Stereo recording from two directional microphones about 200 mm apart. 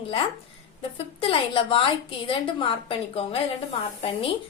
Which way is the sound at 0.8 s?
25° left (ahead or behind).